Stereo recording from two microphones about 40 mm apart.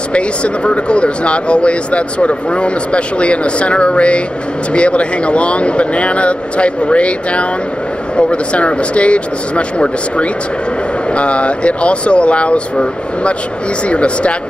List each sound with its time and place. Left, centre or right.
0.1 s speech: left